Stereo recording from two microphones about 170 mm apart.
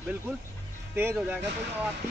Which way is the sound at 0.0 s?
10° right (ahead or behind).